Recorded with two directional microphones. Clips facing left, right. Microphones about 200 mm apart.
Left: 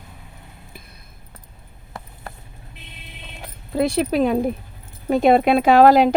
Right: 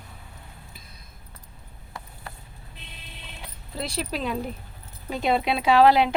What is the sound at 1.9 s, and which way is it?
Clip-clop, 45° left (ahead or behind).